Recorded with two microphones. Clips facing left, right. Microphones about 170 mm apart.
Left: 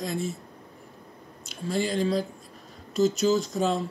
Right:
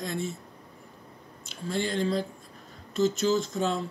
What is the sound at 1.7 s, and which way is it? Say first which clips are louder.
Speech: left 2 dB; 10° left (ahead or behind).